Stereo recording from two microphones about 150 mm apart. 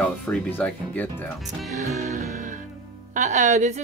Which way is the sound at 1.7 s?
50° right (ahead or behind).